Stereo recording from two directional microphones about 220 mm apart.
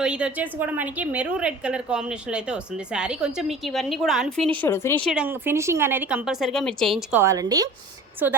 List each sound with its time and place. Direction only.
0.0 s a woman's voice: 5° right (ahead or behind)
4.6 s speech: 10° left (ahead or behind)
5.1 s a woman's voice: 5° right (ahead or behind)